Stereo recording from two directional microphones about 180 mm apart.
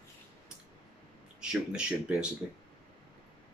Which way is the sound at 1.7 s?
5° right (ahead or behind).